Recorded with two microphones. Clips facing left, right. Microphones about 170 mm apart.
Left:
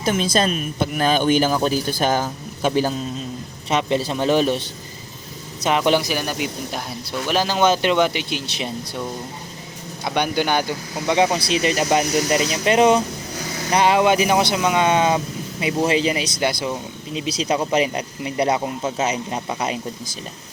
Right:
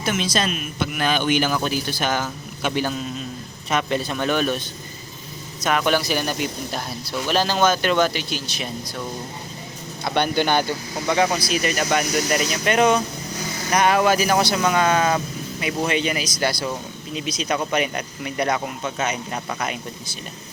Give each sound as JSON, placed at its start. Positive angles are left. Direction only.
{"t": 0.1, "sound": "speech", "side_deg": 35}
{"t": 3.7, "sound": "speech", "side_deg": 25}
{"t": 5.6, "sound": "speech", "side_deg": 25}
{"t": 6.1, "sound": "speech", "side_deg": 5}
{"t": 10.0, "sound": "speech", "side_deg": 10}